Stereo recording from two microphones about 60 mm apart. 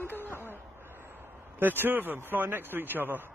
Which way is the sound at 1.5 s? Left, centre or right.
Right.